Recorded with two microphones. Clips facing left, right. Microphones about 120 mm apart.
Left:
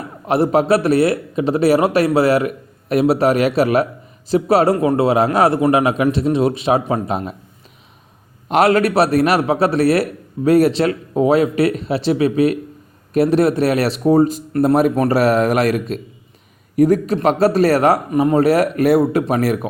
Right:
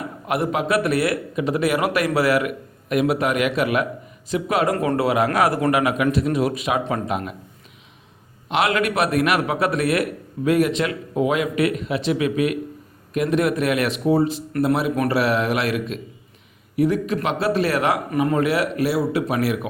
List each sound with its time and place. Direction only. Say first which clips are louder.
0.3 s a man's voice: left 7 dB; 30° left (ahead or behind)
8.4 s a man's voice: left 7 dB; 40° left (ahead or behind)
18.1 s speech: left 6 dB; 25° left (ahead or behind); by 19.5 s 40° left (ahead or behind)